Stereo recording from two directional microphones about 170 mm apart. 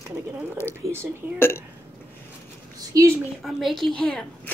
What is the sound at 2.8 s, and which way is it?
Speech, 20° right (ahead or behind).